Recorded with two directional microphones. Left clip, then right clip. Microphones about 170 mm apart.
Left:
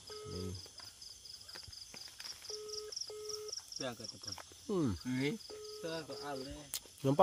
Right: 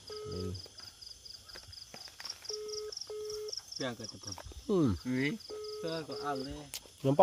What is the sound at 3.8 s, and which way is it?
Cricket, 40° right (ahead or behind).